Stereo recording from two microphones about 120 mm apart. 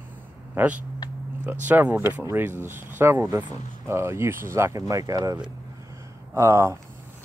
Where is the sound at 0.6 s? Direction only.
10° right (ahead or behind).